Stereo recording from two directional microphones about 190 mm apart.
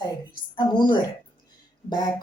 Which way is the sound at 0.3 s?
25° left (ahead or behind).